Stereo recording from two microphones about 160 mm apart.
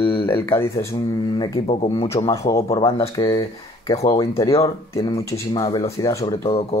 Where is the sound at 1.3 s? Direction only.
25° left (ahead or behind).